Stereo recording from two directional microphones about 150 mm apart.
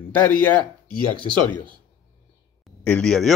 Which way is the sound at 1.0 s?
30° right (ahead or behind).